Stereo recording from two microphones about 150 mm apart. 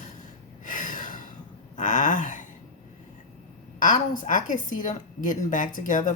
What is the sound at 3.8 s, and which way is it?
A woman's voice, 60° left (ahead or behind).